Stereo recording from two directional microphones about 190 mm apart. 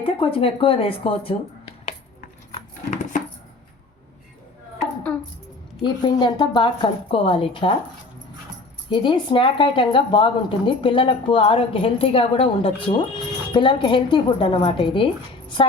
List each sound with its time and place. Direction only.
0.0 s speech: 30° left (ahead or behind)
2.6 s dog: 40° left (ahead or behind)
5.8 s speech: 25° left (ahead or behind)
8.9 s speech: 25° left (ahead or behind)